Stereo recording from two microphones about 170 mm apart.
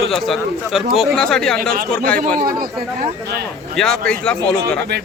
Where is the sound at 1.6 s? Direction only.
60° right (ahead or behind).